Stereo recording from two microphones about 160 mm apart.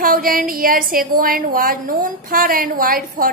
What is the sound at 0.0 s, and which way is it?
A woman's voice, 60° right (ahead or behind).